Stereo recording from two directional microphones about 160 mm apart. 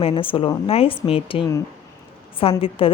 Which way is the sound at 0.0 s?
35° left (ahead or behind).